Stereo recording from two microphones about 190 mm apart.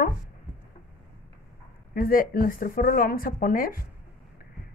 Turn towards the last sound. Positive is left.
turn(degrees=50)  # may be behind; listen again after turning